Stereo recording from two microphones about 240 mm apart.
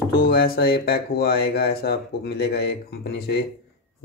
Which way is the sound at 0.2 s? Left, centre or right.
Left.